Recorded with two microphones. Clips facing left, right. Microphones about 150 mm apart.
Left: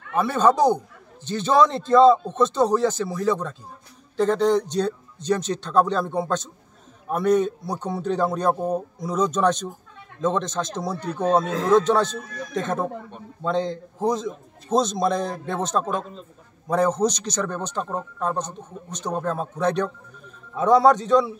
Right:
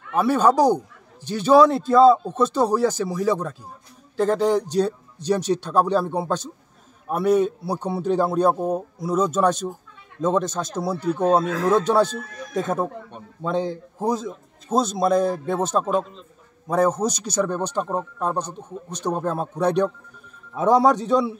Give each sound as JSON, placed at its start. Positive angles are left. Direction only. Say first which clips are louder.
{"t": 0.1, "sound": "a man's voice", "louder": "right 1 dB", "side_deg": -10}